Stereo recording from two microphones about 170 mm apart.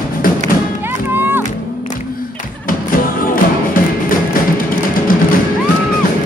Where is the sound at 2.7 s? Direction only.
55° left (ahead or behind).